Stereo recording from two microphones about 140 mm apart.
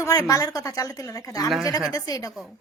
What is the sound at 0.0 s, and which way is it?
A woman's voice, 25° left (ahead or behind).